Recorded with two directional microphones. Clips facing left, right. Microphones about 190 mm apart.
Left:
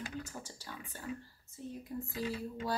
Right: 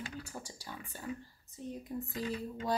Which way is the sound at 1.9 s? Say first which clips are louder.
Right 1 dB; 20° right (ahead or behind).